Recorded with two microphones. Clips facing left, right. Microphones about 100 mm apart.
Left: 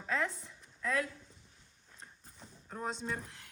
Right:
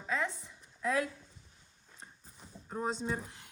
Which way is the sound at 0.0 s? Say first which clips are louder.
Even; centre (ahead or behind).